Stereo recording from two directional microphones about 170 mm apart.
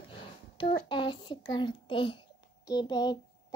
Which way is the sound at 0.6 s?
30° left (ahead or behind).